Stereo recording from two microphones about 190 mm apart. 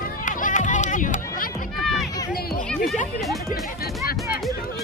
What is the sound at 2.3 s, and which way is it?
Music, 50° left (ahead or behind).